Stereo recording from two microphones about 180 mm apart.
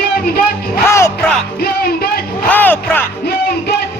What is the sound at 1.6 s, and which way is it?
Music, 60° left (ahead or behind).